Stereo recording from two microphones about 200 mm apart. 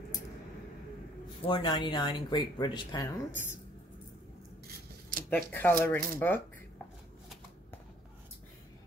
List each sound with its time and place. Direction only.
1.5 s speech: 25° left (ahead or behind)
5.3 s speech: 10° left (ahead or behind)